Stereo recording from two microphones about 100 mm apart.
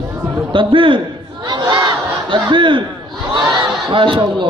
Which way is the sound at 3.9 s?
60° right (ahead or behind).